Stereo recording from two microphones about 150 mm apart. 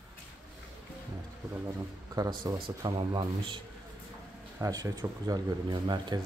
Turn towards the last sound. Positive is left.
turn(degrees=-30)  # may be behind; listen again after turning